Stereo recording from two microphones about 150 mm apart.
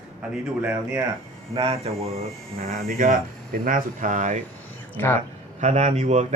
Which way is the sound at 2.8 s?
65° right (ahead or behind).